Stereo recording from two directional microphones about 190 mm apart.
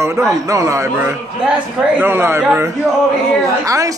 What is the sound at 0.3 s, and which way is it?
Speech, 15° right (ahead or behind).